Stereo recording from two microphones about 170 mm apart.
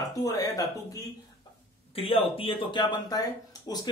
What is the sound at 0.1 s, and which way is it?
Speech, 20° left (ahead or behind).